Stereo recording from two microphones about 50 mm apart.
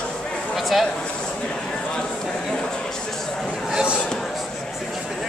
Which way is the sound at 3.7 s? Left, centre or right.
Right.